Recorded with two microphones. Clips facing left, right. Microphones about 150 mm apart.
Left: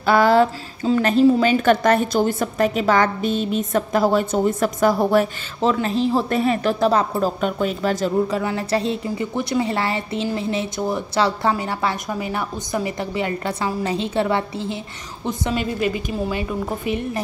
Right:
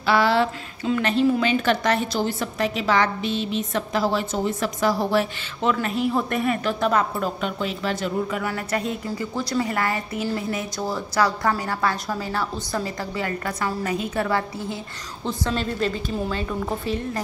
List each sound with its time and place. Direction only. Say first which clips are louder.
0.0 s a woman's voice: left 5 dB; 45° left (ahead or behind)
5.6 s speech: left 3 dB; 30° left (ahead or behind)
8.4 s a woman's voice: left 4 dB; 30° left (ahead or behind)